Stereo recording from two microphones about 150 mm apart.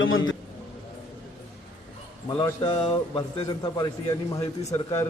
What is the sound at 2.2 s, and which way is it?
A man's voice, 30° left (ahead or behind).